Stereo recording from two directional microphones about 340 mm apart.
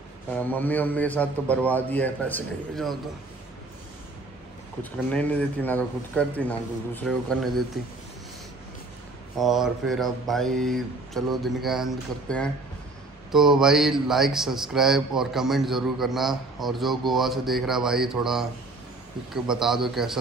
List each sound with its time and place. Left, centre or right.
0.3 s a man's voice: centre
5.1 s a man's voice: centre
9.4 s a man's voice: centre